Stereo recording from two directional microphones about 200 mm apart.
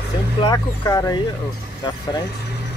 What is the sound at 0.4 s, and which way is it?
Speech, 20° left (ahead or behind).